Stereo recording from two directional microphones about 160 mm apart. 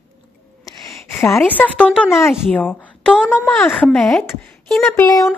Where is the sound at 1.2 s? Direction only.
15° left (ahead or behind).